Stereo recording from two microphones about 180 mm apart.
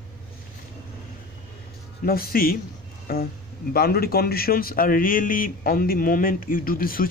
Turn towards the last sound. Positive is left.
turn(degrees=55)  # may be behind; listen again after turning